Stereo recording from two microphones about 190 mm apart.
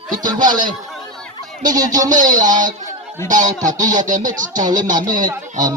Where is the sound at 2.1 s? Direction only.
40° right (ahead or behind).